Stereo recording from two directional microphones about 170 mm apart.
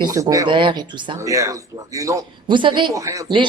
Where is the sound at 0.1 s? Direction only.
20° right (ahead or behind).